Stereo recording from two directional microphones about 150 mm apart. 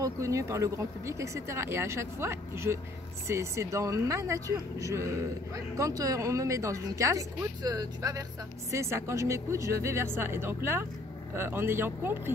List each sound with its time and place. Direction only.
0.0 s speech: 20° right (ahead or behind)